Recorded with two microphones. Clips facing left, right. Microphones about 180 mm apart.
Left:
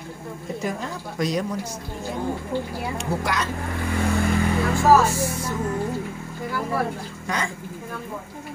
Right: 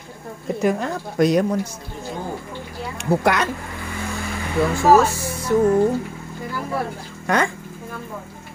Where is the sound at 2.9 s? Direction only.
60° right (ahead or behind).